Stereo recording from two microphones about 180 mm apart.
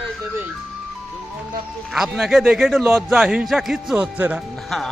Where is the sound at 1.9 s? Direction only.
Centre (ahead or behind).